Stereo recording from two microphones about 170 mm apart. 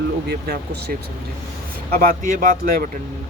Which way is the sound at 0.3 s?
70° right (ahead or behind).